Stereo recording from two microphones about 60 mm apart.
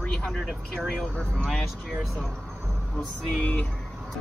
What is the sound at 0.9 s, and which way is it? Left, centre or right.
Speech, centre.